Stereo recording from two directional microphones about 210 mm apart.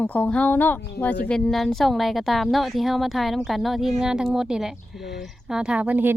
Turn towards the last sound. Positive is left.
turn(degrees=-10)  # may be behind; listen again after turning